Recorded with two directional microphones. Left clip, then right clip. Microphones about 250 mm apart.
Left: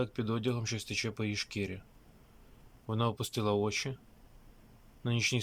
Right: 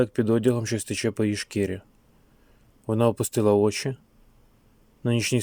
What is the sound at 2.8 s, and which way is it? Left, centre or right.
Speech, right.